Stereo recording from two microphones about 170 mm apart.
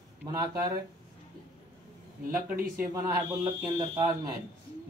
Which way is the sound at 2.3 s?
10° right (ahead or behind).